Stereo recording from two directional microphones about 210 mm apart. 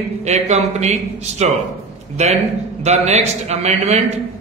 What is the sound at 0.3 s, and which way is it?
Speech, 30° right (ahead or behind).